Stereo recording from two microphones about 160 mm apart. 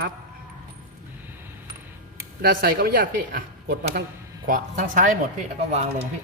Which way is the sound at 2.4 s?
70° right (ahead or behind).